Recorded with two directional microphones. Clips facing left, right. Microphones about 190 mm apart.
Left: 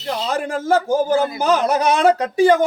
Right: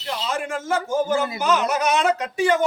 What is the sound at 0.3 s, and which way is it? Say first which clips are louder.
A man's voice: left 6 dB; 35° left (ahead or behind).